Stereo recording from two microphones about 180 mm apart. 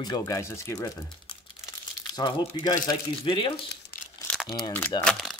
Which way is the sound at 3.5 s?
60° left (ahead or behind).